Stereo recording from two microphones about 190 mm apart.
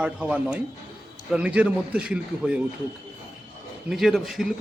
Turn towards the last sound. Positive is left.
turn(degrees=0)  # may be behind; listen again after turning